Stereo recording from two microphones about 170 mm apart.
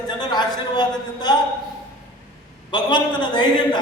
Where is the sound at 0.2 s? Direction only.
25° left (ahead or behind).